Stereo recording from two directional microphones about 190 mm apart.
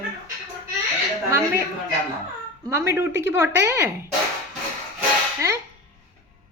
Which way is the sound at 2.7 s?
15° right (ahead or behind).